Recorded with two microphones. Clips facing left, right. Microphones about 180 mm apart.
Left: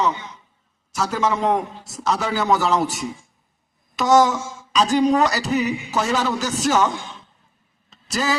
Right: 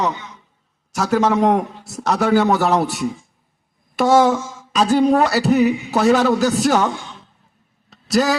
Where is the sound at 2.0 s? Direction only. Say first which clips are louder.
Right 5 dB; 60° right (ahead or behind).